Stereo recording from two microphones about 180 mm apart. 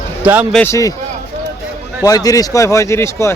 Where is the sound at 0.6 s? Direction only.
15° left (ahead or behind).